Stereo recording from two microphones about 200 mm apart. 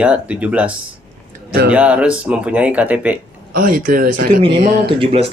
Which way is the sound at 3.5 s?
45° right (ahead or behind).